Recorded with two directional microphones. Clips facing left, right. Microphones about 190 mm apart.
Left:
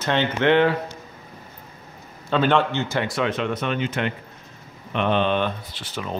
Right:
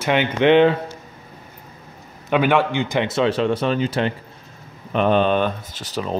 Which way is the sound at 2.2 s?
15° right (ahead or behind).